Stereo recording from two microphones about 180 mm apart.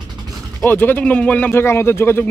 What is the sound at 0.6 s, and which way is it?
Speech, 10° left (ahead or behind).